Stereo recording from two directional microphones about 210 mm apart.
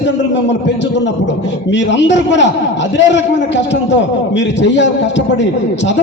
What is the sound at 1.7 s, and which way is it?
A man's voice, 60° left (ahead or behind).